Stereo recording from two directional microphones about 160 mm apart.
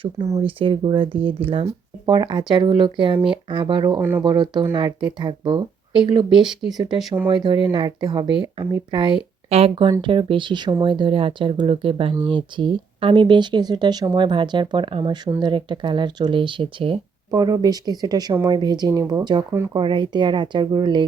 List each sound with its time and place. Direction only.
0.0 s speech: 30° right (ahead or behind)
6.4 s speech: centre (ahead or behind)
6.7 s speech: 30° right (ahead or behind)